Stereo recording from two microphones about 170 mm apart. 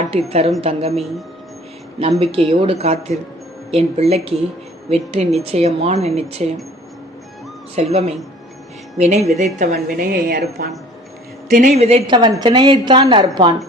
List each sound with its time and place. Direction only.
0.0 s a woman's voice: 35° right (ahead or behind)
7.8 s a woman's voice: 40° right (ahead or behind)
9.7 s a woman's voice: 60° right (ahead or behind)
11.7 s a woman's voice: 35° right (ahead or behind)